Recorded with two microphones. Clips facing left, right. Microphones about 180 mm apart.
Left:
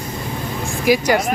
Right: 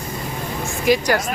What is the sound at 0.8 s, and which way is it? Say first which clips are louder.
Speech: left 2 dB; 5° left (ahead or behind).